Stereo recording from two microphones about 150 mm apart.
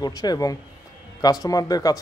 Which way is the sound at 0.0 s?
25° left (ahead or behind).